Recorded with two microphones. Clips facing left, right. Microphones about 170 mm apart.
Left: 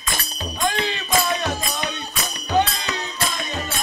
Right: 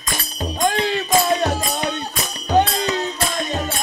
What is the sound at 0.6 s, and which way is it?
Music, 40° right (ahead or behind).